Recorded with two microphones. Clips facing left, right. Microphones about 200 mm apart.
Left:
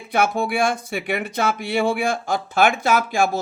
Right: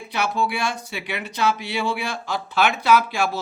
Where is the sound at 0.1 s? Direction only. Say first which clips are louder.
Left 4 dB; 50° left (ahead or behind).